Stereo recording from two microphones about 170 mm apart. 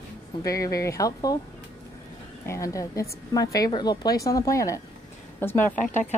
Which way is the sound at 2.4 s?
15° left (ahead or behind).